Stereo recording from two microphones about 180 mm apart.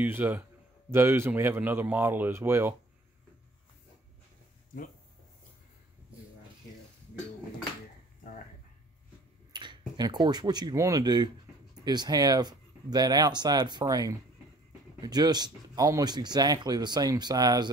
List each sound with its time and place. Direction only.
0.0 s a man's voice: 10° right (ahead or behind)
9.5 s speech: 25° right (ahead or behind)